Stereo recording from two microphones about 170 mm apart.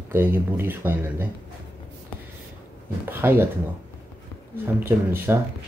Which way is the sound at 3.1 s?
15° right (ahead or behind).